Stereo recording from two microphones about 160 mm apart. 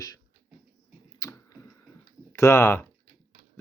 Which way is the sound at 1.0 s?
25° left (ahead or behind).